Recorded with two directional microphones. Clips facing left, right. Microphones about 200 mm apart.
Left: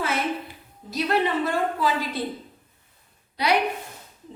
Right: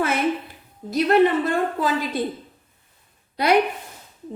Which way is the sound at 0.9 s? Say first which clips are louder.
Right 7 dB; 50° right (ahead or behind).